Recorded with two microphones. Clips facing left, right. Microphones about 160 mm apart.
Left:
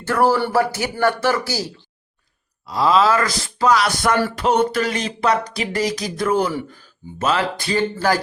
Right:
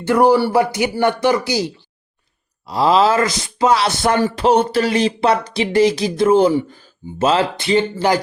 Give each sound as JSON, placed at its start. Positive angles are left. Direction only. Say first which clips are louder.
{"t": 0.0, "sound": "speech", "louder": "right 4 dB", "side_deg": -15}
{"t": 2.6, "sound": "speech", "louder": "right 2 dB", "side_deg": -30}